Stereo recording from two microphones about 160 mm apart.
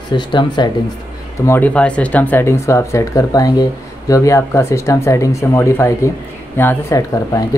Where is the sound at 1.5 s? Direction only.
10° left (ahead or behind).